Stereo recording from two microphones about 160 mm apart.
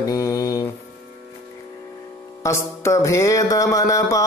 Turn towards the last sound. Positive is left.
turn(degrees=20)  # may be behind; listen again after turning